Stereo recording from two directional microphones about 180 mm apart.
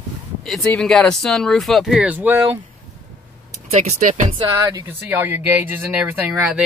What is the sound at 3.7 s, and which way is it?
Speech, 40° right (ahead or behind).